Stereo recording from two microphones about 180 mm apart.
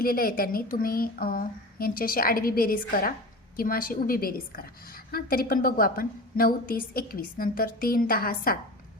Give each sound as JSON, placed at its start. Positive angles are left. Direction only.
{"t": 0.0, "sound": "a woman's voice", "side_deg": 55}